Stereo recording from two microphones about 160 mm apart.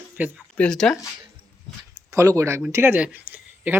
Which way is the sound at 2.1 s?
20° right (ahead or behind).